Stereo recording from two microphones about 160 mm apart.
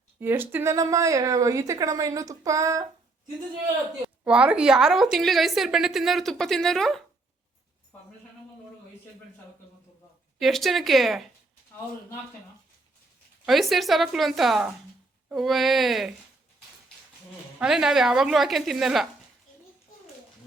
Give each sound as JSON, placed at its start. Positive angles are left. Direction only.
{"t": 0.2, "sound": "speech", "side_deg": -10}
{"t": 4.2, "sound": "a woman's voice", "side_deg": -10}
{"t": 10.4, "sound": "a woman's voice", "side_deg": 0}
{"t": 13.4, "sound": "a woman's voice", "side_deg": 0}
{"t": 17.6, "sound": "a woman's voice", "side_deg": -5}